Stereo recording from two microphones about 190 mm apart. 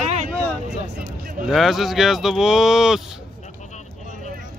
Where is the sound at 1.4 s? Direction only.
Centre (ahead or behind).